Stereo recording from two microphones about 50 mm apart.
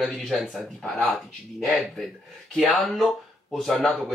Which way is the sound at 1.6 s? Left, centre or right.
Centre.